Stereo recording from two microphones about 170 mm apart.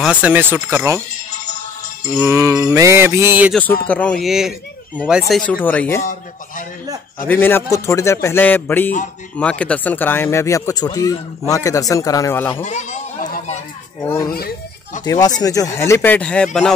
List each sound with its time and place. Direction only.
0.0 s speech: 5° right (ahead or behind)
1.3 s music: 45° left (ahead or behind)
2.1 s speech: 10° right (ahead or behind)
3.8 s speech: 10° left (ahead or behind)
5.5 s speech: 10° left (ahead or behind)
7.2 s speech: 10° left (ahead or behind)
12.6 s speech: 50° left (ahead or behind)
14.0 s speech: 15° left (ahead or behind)